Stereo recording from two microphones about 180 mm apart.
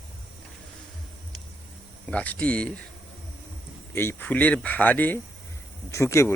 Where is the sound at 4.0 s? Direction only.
10° left (ahead or behind).